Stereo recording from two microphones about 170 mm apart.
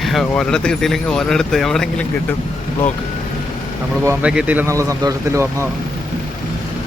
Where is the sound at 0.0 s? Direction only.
Centre (ahead or behind).